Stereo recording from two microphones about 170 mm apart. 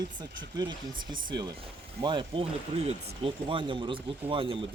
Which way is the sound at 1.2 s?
25° right (ahead or behind).